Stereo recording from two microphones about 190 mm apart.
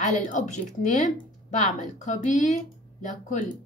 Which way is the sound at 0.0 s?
40° left (ahead or behind).